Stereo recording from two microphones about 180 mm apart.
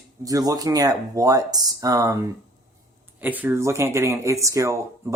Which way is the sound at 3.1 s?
10° right (ahead or behind).